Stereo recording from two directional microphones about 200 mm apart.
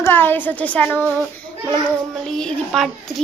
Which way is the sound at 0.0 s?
10° left (ahead or behind).